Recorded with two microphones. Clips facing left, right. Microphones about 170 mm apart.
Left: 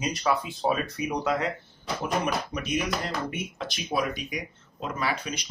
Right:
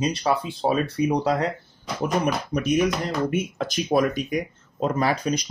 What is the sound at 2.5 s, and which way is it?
Speech, 40° right (ahead or behind).